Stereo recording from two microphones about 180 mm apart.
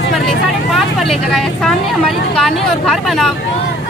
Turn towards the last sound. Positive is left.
turn(degrees=0)  # may be behind; listen again after turning